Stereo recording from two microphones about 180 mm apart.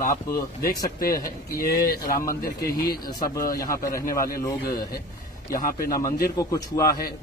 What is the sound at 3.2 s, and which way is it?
Speech, 20° left (ahead or behind).